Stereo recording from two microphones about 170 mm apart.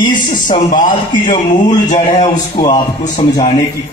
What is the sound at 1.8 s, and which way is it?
Speech, 45° left (ahead or behind).